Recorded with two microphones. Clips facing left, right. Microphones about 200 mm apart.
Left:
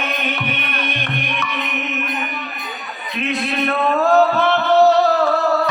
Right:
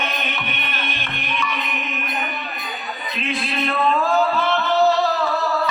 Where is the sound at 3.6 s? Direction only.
75° left (ahead or behind).